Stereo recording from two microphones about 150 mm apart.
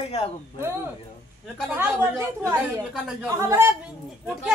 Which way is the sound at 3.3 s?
20° right (ahead or behind).